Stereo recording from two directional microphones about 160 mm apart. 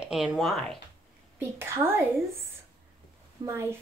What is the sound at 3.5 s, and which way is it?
Speech, 15° right (ahead or behind).